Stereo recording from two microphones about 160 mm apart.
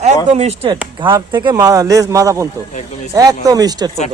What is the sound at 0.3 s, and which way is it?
A man's voice, 40° right (ahead or behind).